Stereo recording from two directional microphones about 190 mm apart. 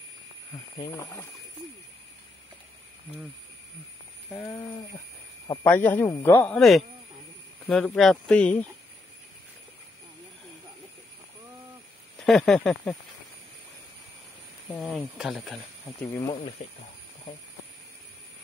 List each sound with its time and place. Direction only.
0.7 s speech: 20° left (ahead or behind)
4.3 s speech: 15° left (ahead or behind)
5.7 s speech: 10° left (ahead or behind)
12.2 s speech: centre (ahead or behind)
14.7 s speech: centre (ahead or behind)
16.6 s speech: 30° left (ahead or behind)